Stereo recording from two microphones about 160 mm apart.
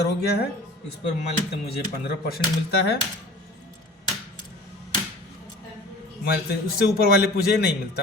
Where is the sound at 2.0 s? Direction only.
80° left.